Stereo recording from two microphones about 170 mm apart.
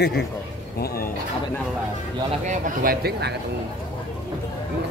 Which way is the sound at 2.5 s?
65° right (ahead or behind).